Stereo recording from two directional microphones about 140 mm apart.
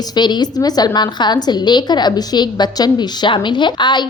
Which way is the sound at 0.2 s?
30° left (ahead or behind).